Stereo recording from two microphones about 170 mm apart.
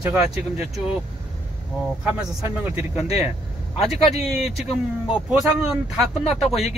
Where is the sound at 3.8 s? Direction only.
Centre (ahead or behind).